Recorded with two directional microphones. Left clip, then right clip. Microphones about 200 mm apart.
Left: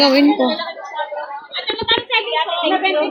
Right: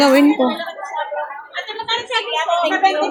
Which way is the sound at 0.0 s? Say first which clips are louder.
Right 1 dB; 10° right (ahead or behind).